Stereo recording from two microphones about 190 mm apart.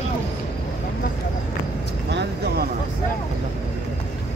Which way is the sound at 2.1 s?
65° right (ahead or behind).